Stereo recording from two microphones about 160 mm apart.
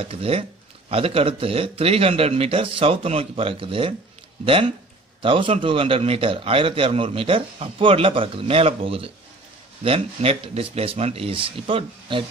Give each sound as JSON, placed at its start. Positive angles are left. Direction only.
{"t": 0.0, "sound": "speech", "side_deg": -35}